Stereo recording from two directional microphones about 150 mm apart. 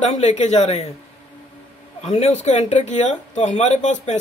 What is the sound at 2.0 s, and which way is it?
Speech, 45° left (ahead or behind).